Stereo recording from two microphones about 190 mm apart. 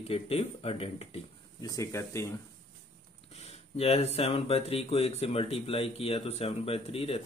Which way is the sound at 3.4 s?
30° left (ahead or behind).